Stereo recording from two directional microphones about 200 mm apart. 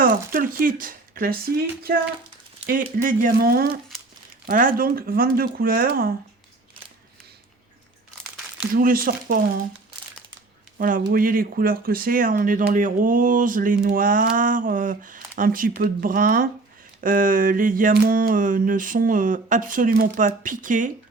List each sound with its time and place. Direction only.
0.3 s speech: 45° right (ahead or behind)
2.6 s speech: 45° right (ahead or behind)
8.7 s speech: 45° right (ahead or behind)
10.8 s speech: 45° right (ahead or behind)